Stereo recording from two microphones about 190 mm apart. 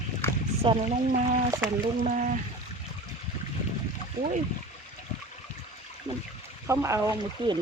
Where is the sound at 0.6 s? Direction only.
30° right (ahead or behind).